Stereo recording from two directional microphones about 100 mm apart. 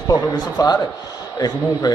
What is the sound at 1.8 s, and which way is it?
Speech, 35° left (ahead or behind).